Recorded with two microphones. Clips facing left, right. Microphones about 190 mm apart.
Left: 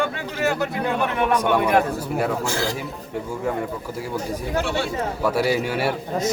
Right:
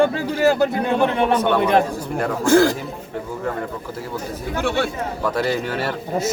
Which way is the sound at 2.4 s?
50° right (ahead or behind).